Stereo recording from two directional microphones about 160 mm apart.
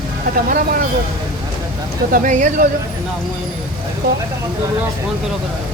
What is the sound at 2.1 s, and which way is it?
Speech, 55° right (ahead or behind).